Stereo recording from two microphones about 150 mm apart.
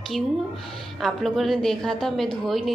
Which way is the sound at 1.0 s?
Centre (ahead or behind).